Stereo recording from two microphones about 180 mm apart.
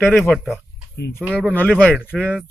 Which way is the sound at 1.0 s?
65° left (ahead or behind).